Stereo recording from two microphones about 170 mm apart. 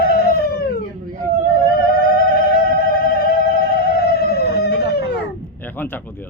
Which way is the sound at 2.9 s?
60° left (ahead or behind).